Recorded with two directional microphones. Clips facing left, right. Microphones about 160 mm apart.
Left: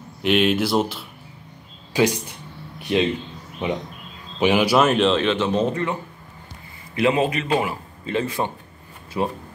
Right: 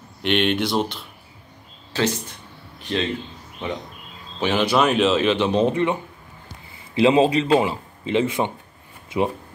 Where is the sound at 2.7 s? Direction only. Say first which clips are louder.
Left 4 dB; 10° left (ahead or behind).